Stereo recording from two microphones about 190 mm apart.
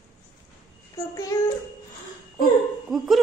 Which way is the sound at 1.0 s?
25° left (ahead or behind).